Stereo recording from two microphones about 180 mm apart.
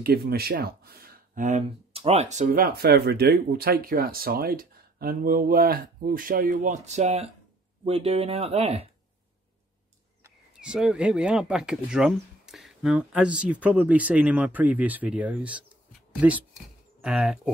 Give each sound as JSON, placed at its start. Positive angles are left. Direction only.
{"t": 0.0, "sound": "speech", "side_deg": -60}
{"t": 10.5, "sound": "speech", "side_deg": -5}